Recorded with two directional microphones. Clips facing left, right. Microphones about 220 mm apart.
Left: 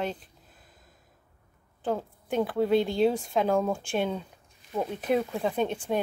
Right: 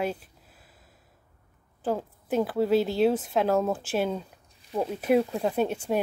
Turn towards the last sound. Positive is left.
turn(degrees=-10)  # may be behind; listen again after turning